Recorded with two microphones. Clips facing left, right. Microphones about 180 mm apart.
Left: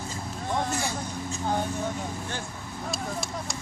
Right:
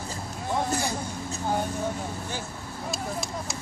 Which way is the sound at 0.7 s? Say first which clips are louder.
Right 2 dB; 35° right (ahead or behind).